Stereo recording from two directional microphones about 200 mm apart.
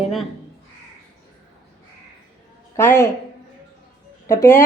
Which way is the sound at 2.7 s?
10° left (ahead or behind).